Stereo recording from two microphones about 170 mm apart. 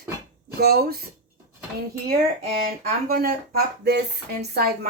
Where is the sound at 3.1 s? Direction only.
60° right (ahead or behind).